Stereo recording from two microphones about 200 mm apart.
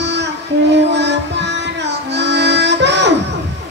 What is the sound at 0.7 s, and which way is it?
Music, 60° right (ahead or behind).